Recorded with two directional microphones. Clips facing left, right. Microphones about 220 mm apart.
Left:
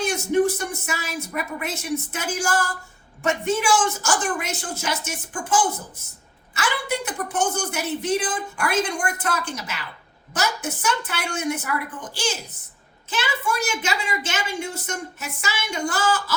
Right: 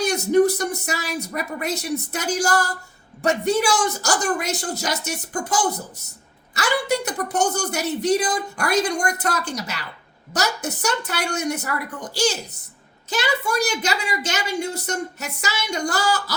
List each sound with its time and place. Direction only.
0.0 s a woman's voice: 40° right (ahead or behind)
13.1 s a woman's voice: 40° right (ahead or behind)